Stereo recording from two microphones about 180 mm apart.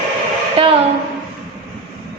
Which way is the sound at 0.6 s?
30° right (ahead or behind).